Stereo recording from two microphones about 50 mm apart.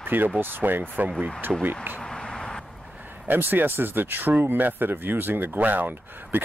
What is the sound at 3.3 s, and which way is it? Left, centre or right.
Speech, right.